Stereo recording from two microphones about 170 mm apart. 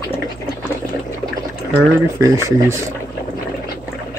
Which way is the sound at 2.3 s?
15° right (ahead or behind).